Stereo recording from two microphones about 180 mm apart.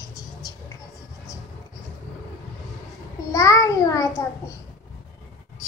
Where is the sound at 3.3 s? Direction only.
20° left (ahead or behind).